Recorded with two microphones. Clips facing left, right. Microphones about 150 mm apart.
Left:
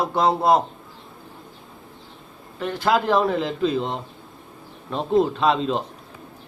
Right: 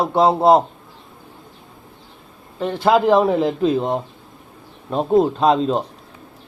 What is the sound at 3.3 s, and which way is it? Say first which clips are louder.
Speech: right 5 dB; 40° right (ahead or behind).